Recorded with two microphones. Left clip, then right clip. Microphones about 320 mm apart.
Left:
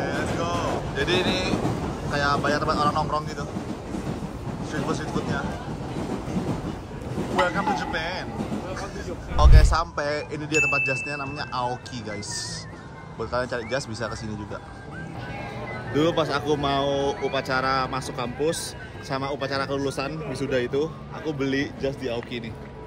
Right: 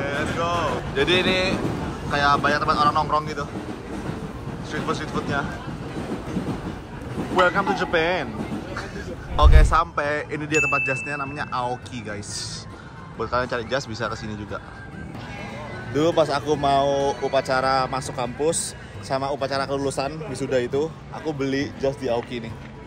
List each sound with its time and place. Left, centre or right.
0.0 s a sound: centre
2.0 s speech: centre
4.6 s speech: centre
7.3 s speech: centre
9.4 s speech: centre
15.9 s speech: centre